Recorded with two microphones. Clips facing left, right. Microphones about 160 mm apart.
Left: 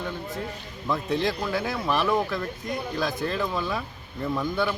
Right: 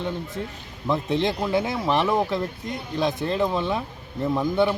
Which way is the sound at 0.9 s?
25° right (ahead or behind).